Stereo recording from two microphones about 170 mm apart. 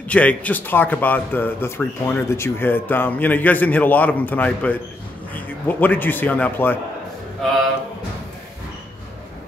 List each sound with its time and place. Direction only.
0.1 s speech: 10° left (ahead or behind)